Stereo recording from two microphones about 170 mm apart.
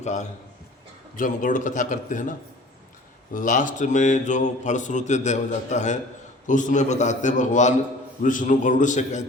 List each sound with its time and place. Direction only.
0.0 s a man's voice: 45° left (ahead or behind)
3.3 s a man's voice: 50° left (ahead or behind)